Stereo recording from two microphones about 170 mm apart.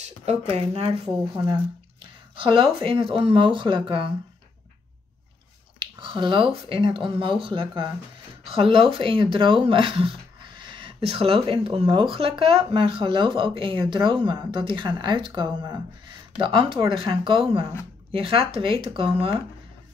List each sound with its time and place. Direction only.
0.0 s a sound: 40° right (ahead or behind)
0.6 s speech: 40° right (ahead or behind)
1.4 s speech: 30° right (ahead or behind)
5.8 s speech: 30° right (ahead or behind)